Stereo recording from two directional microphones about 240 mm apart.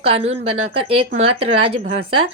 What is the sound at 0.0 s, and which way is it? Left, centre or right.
Speech, right.